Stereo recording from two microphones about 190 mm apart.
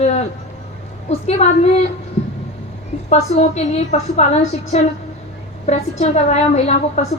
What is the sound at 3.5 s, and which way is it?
A woman's voice, 35° left (ahead or behind).